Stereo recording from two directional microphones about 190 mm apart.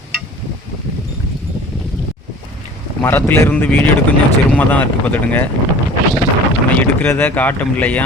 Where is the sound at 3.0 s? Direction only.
10° left (ahead or behind).